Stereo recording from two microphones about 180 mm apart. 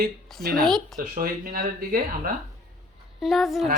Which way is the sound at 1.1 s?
50° right (ahead or behind).